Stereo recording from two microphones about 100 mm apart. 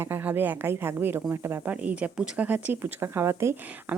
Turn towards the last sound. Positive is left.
turn(degrees=-25)  # may be behind; listen again after turning